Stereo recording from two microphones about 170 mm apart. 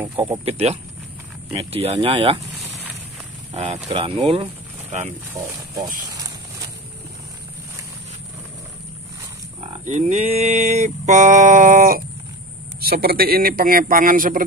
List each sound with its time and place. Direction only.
0.5 s speech: 35° right (ahead or behind)
3.5 s speech: 40° right (ahead or behind)
5.3 s speech: 20° right (ahead or behind)
9.6 s a sound: 40° right (ahead or behind)
12.8 s a man's voice: 65° right (ahead or behind)